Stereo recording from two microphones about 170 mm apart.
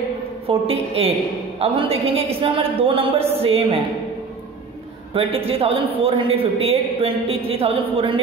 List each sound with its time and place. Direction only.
0.5 s a man's voice: 35° right (ahead or behind)
5.1 s a man's voice: 35° right (ahead or behind)